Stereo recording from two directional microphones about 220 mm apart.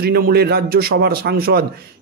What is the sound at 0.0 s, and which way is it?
A man's voice, 45° right (ahead or behind).